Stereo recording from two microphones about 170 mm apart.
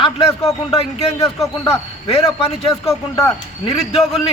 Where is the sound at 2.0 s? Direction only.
35° left (ahead or behind).